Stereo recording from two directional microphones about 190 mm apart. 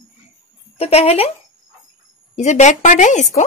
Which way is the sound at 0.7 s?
35° left (ahead or behind).